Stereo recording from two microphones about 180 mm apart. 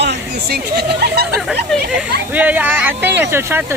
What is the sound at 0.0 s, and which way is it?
Speech, 65° right (ahead or behind).